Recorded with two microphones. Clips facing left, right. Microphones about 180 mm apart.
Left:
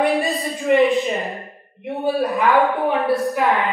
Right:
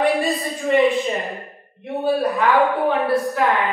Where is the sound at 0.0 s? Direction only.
Centre (ahead or behind).